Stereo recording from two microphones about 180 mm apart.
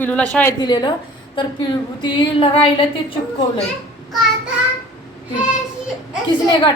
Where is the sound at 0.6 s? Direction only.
25° left (ahead or behind).